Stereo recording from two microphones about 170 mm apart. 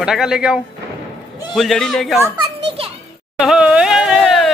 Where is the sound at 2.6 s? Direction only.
35° right (ahead or behind).